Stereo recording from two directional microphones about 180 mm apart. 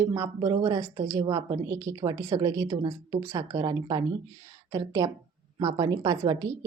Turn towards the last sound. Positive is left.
turn(degrees=-20)  # may be behind; listen again after turning